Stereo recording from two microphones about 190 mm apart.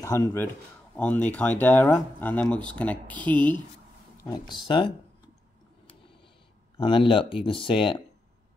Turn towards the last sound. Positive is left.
turn(degrees=25)  # may be behind; listen again after turning